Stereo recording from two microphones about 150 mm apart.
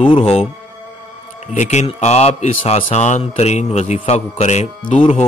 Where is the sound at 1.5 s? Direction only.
50° left (ahead or behind).